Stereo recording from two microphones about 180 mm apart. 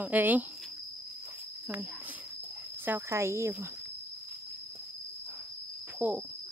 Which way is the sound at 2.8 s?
15° right (ahead or behind).